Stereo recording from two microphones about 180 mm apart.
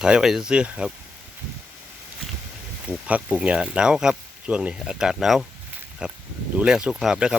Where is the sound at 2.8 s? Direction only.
5° right (ahead or behind).